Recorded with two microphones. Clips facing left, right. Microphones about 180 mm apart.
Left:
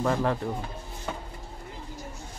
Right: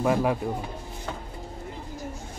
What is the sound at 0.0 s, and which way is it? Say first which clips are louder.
Speech: right 2 dB; 10° right (ahead or behind).